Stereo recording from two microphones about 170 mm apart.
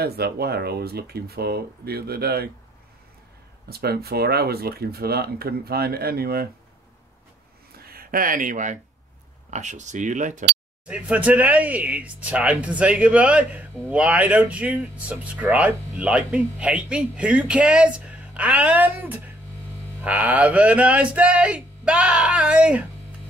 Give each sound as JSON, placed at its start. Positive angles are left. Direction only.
{"t": 0.0, "sound": "speech", "side_deg": -70}
{"t": 3.6, "sound": "speech", "side_deg": -65}
{"t": 7.8, "sound": "speech", "side_deg": -60}
{"t": 10.9, "sound": "speech", "side_deg": -5}